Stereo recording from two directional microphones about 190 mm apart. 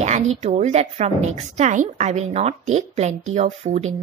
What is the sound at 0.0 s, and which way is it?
Speech, 35° right (ahead or behind).